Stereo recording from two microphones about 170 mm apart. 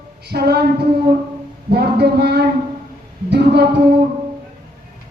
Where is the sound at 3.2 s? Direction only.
80° right.